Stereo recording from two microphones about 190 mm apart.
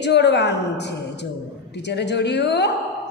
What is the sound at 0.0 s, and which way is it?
A woman's voice, 65° left (ahead or behind).